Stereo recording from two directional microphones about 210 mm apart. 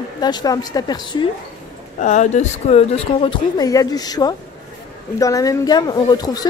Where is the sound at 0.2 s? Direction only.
20° left (ahead or behind).